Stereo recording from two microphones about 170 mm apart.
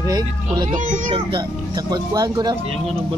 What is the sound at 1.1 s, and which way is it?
Speech, 25° right (ahead or behind).